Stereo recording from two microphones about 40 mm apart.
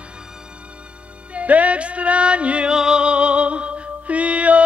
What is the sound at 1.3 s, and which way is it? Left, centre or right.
Music, right.